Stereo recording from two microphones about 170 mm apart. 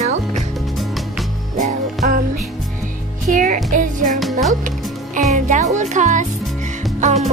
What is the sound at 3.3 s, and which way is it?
Speech, 50° right (ahead or behind).